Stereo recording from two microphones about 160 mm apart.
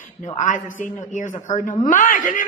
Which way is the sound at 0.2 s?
50° left (ahead or behind).